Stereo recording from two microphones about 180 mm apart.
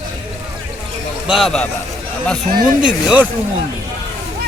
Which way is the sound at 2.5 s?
55° right (ahead or behind).